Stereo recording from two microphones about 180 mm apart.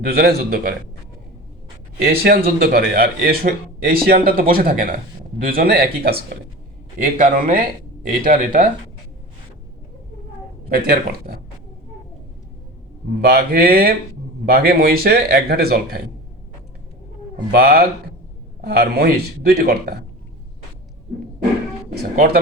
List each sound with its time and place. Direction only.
0.0 s speech: 60° right (ahead or behind)
2.0 s a man's voice: 55° right (ahead or behind)
10.7 s speech: 55° right (ahead or behind)
13.2 s speech: 60° right (ahead or behind)
17.5 s speech: 55° right (ahead or behind)
22.1 s speech: 55° right (ahead or behind)